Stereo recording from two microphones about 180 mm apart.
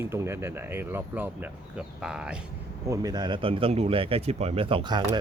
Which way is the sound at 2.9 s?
20° right (ahead or behind).